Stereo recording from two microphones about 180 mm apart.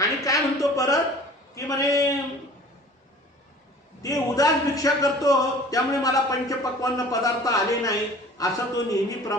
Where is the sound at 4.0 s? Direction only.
20° left (ahead or behind).